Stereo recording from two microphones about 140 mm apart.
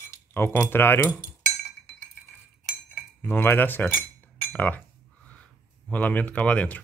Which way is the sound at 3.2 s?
15° left (ahead or behind).